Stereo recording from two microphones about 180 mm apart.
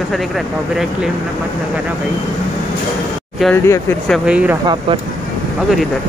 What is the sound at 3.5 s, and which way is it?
Speech, 15° left (ahead or behind).